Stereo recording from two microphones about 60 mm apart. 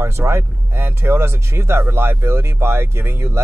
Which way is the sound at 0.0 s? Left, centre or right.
Right.